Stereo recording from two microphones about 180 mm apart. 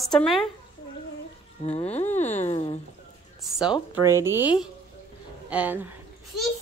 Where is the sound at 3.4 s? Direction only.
5° right (ahead or behind).